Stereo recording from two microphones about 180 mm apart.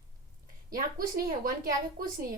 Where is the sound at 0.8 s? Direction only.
50° right (ahead or behind).